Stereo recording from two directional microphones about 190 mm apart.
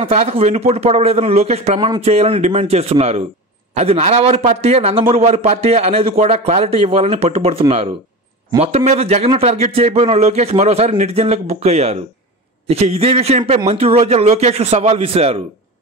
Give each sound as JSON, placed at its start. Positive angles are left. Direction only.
{"t": 0.0, "sound": "a man's voice", "side_deg": -30}